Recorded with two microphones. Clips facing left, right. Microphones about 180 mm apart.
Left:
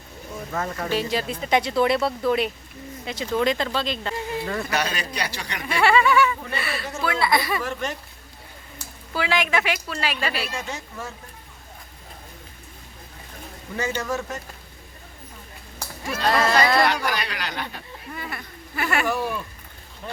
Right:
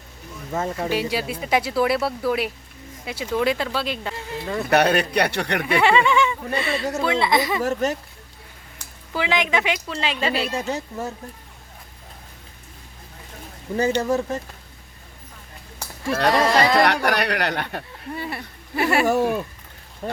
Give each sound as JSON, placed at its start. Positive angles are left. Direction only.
{"t": 0.5, "sound": "speech", "side_deg": -25}
{"t": 0.9, "sound": "speech", "side_deg": -10}
{"t": 4.7, "sound": "a man's voice", "side_deg": -60}
{"t": 5.8, "sound": "speech", "side_deg": -20}
{"t": 7.6, "sound": "speech", "side_deg": -40}
{"t": 9.1, "sound": "speech", "side_deg": -20}
{"t": 10.5, "sound": "speech", "side_deg": -35}
{"t": 14.0, "sound": "speech", "side_deg": -35}
{"t": 16.3, "sound": "speech", "side_deg": -15}
{"t": 16.8, "sound": "a man's voice", "side_deg": -65}
{"t": 18.1, "sound": "speech", "side_deg": -30}
{"t": 19.0, "sound": "speech", "side_deg": -45}